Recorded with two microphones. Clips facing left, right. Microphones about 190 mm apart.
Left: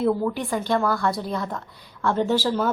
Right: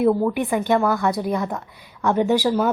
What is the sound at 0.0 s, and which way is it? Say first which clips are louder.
A woman's voice: right 4 dB; 15° right (ahead or behind).